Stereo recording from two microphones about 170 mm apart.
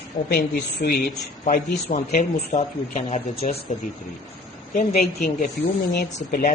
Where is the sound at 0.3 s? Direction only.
65° left (ahead or behind).